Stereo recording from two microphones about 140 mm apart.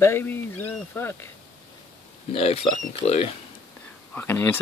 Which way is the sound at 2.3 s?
45° left (ahead or behind).